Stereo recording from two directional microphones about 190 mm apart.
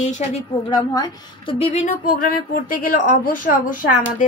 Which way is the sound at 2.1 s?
45° left (ahead or behind).